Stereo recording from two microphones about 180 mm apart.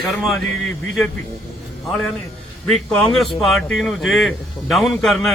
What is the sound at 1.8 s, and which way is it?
Speech, centre (ahead or behind).